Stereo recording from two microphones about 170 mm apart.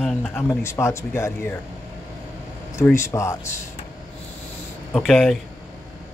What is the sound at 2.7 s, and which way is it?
Speech, 15° left (ahead or behind).